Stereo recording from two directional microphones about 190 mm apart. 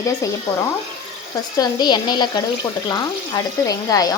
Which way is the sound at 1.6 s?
20° left (ahead or behind).